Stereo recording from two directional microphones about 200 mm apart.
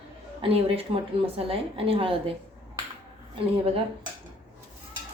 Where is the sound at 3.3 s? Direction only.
30° right (ahead or behind).